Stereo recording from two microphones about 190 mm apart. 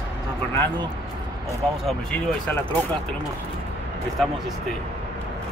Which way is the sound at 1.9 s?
5° left (ahead or behind).